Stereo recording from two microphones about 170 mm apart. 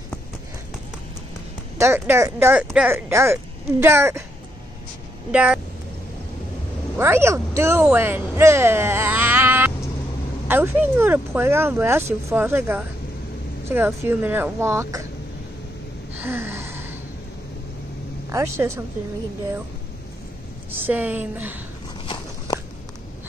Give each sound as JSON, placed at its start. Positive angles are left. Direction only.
{"t": 1.8, "sound": "speech", "side_deg": -15}
{"t": 5.3, "sound": "speech", "side_deg": -5}
{"t": 7.0, "sound": "speech", "side_deg": -15}
{"t": 16.2, "sound": "gasp", "side_deg": -15}
{"t": 18.3, "sound": "speech", "side_deg": -15}
{"t": 20.7, "sound": "speech", "side_deg": -10}
{"t": 22.0, "sound": "a sound", "side_deg": 30}